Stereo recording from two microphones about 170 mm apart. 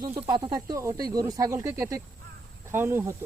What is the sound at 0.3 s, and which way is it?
Speech, 25° right (ahead or behind).